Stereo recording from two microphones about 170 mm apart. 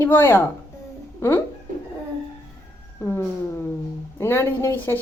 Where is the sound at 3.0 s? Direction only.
15° left (ahead or behind).